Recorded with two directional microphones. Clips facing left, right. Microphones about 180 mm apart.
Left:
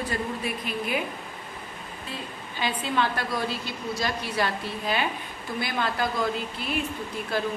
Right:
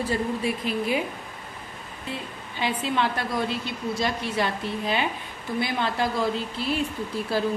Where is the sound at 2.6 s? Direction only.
25° right (ahead or behind).